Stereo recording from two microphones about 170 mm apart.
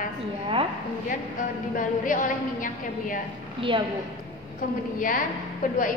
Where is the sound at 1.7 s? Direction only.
50° left (ahead or behind).